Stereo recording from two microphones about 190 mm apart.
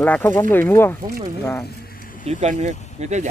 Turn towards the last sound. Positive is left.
turn(degrees=-35)  # may be behind; listen again after turning